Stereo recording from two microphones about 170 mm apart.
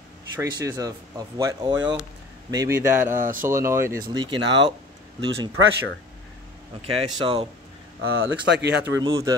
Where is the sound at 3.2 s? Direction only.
55° right (ahead or behind).